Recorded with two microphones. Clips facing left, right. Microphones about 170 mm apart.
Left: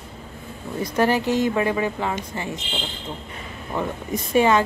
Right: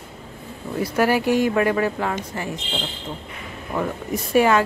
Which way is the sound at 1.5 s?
15° left (ahead or behind).